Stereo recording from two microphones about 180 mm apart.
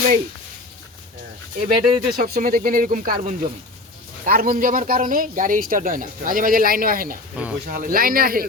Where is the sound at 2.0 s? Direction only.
55° right (ahead or behind).